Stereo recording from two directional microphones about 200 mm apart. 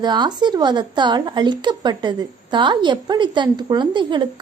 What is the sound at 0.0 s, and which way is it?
Speech, 20° right (ahead or behind).